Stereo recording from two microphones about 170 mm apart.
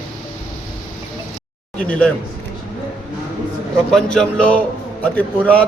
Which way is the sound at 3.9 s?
5° left (ahead or behind).